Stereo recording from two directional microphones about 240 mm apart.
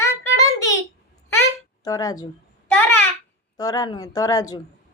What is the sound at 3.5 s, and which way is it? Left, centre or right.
A child's voice, centre.